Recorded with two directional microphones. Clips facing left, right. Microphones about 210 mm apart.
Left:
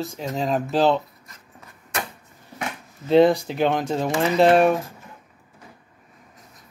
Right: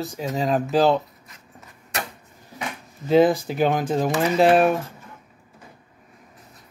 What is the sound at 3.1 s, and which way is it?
Speech, centre (ahead or behind).